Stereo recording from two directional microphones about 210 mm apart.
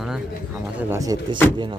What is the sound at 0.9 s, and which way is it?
Speech, 15° right (ahead or behind).